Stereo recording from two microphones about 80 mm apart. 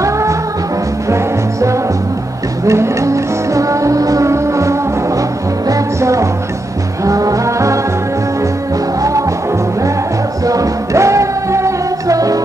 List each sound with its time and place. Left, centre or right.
0.0 s music: right
10.4 s music: right